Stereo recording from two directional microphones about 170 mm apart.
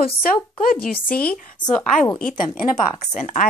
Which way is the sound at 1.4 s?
50° left (ahead or behind).